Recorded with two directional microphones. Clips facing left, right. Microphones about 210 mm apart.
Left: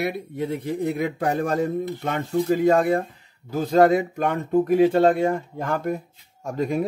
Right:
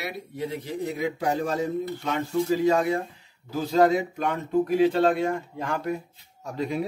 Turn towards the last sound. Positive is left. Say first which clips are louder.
# left 4 dB
turn(degrees=50)  # may be behind; listen again after turning